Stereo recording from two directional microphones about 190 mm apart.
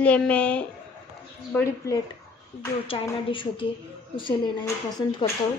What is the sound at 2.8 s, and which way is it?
A woman's voice, 30° left (ahead or behind).